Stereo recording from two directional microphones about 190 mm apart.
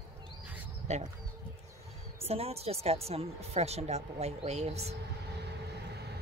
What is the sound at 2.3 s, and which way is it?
Speech, 30° right (ahead or behind).